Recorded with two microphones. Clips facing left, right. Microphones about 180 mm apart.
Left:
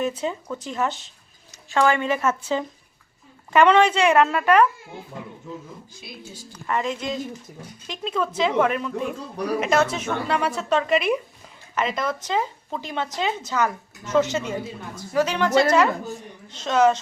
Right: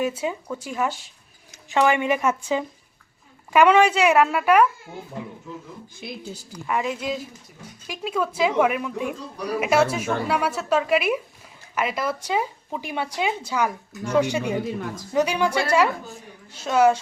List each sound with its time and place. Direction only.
0.0 s speech: 10° right (ahead or behind)
6.0 s speech: 55° right (ahead or behind)
6.5 s speech: 10° right (ahead or behind)
14.7 s a woman's voice: 80° right
15.1 s speech: 15° right (ahead or behind)